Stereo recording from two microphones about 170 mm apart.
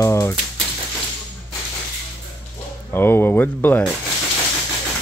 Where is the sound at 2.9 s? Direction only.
10° left (ahead or behind).